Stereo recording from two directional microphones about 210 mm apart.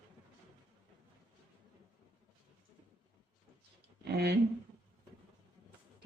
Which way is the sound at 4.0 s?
50° right (ahead or behind).